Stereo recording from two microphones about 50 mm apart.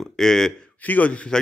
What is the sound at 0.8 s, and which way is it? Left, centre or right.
Speech, left.